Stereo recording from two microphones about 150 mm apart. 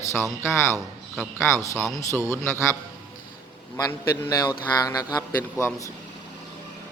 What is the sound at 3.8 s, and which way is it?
Speech, 20° left (ahead or behind).